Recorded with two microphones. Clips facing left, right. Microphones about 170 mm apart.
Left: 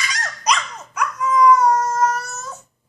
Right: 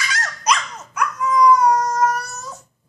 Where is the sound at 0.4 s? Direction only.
5° right (ahead or behind).